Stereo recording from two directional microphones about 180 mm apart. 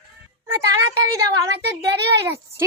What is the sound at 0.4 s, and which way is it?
A woman's voice, 15° right (ahead or behind).